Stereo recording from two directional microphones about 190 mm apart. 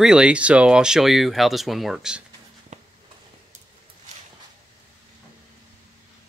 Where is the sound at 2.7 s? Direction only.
35° right (ahead or behind).